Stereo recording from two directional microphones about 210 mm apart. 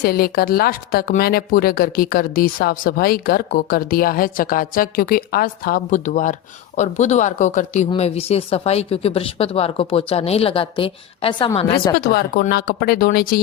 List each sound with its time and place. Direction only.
0.0 s speech: 45° left (ahead or behind); by 11.9 s 25° left (ahead or behind)
11.9 s speech: 45° left (ahead or behind)